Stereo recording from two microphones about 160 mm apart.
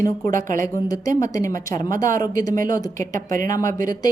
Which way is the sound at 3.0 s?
55° right (ahead or behind).